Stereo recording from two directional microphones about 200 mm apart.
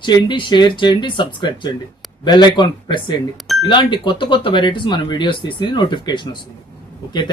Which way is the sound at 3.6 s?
25° left (ahead or behind).